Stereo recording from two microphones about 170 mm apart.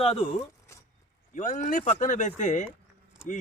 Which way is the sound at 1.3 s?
45° left (ahead or behind).